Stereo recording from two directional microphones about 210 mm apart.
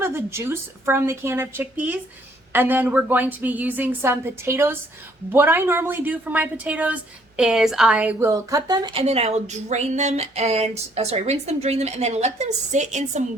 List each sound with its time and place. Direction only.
0.0 s a woman's voice: 10° right (ahead or behind); by 13.2 s 35° right (ahead or behind)